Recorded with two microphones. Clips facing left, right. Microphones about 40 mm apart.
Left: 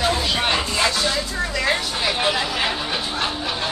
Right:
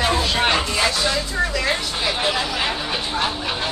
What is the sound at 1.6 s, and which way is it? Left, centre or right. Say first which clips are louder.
Speech: left 1 dB; centre.